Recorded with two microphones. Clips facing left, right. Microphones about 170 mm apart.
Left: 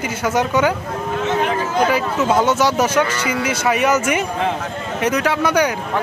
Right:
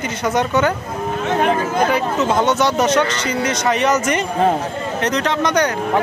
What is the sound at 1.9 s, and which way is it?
Speech, 5° left (ahead or behind).